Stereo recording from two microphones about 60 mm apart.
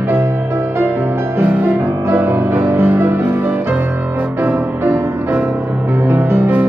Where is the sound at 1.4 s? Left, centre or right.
Right.